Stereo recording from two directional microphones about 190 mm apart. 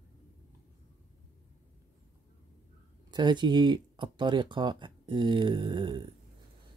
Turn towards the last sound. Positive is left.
turn(degrees=-25)  # may be behind; listen again after turning